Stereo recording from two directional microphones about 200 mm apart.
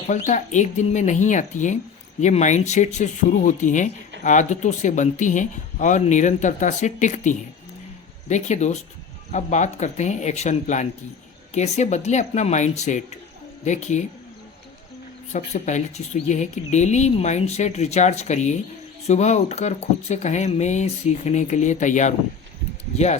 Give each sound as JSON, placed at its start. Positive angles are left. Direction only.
{"t": 0.3, "sound": "speech", "side_deg": 35}
{"t": 15.3, "sound": "speech", "side_deg": 35}